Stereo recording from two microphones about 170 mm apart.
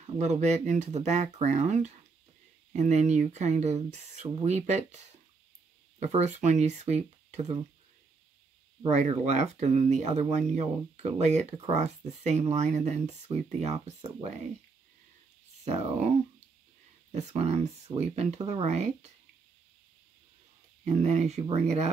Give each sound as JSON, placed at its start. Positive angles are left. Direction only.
{"t": 0.0, "sound": "speech", "side_deg": -40}
{"t": 8.8, "sound": "speech", "side_deg": -40}
{"t": 15.6, "sound": "speech", "side_deg": -35}
{"t": 17.1, "sound": "speech", "side_deg": -40}
{"t": 20.8, "sound": "speech", "side_deg": -40}